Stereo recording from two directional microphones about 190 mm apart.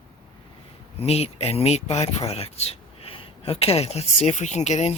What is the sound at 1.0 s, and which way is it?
Speech, 30° left (ahead or behind).